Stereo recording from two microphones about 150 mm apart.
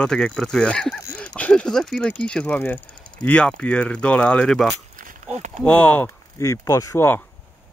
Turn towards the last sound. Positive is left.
turn(degrees=15)  # may be behind; listen again after turning